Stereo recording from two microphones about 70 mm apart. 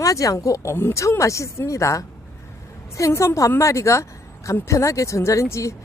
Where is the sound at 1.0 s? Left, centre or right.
Left.